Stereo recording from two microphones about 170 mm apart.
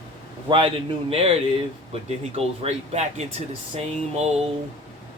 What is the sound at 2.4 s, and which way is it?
Speech, 40° right (ahead or behind).